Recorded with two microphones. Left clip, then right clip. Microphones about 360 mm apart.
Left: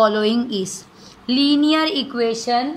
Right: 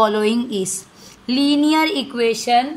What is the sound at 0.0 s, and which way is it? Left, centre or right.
A woman's voice, centre.